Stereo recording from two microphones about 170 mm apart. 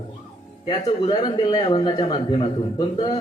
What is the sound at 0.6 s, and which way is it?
A man's voice, 30° left (ahead or behind).